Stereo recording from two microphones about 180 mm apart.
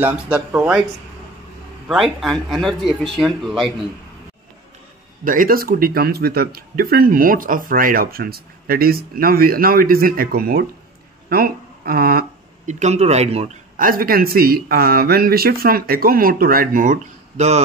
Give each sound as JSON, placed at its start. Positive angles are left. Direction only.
{"t": 0.0, "sound": "speech", "side_deg": -10}
{"t": 1.9, "sound": "speech", "side_deg": 0}
{"t": 5.2, "sound": "speech", "side_deg": -50}
{"t": 13.7, "sound": "speech", "side_deg": -50}